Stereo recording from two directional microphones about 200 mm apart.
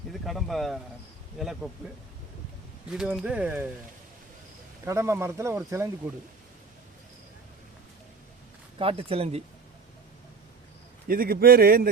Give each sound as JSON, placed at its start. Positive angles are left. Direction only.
{"t": 0.1, "sound": "speech", "side_deg": 0}
{"t": 2.9, "sound": "speech", "side_deg": -5}
{"t": 4.9, "sound": "speech", "side_deg": -15}
{"t": 8.8, "sound": "speech", "side_deg": -25}
{"t": 11.1, "sound": "a man's voice", "side_deg": -45}